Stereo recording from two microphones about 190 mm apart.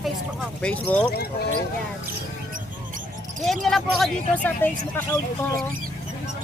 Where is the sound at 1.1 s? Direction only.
55° left (ahead or behind).